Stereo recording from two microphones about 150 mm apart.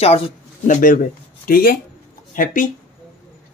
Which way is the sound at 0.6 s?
60° left (ahead or behind).